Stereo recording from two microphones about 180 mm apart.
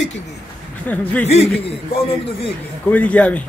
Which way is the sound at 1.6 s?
30° left (ahead or behind).